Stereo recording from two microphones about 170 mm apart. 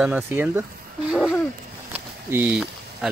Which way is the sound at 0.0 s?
10° right (ahead or behind).